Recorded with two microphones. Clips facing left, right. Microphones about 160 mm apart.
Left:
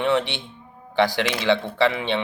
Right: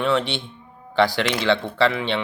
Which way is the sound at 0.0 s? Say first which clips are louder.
Even; 20° left (ahead or behind).